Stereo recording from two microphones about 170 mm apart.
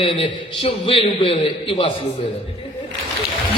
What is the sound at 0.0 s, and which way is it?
A man's voice, 35° left (ahead or behind).